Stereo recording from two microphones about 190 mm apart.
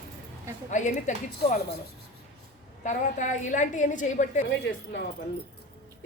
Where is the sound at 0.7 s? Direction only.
40° left (ahead or behind).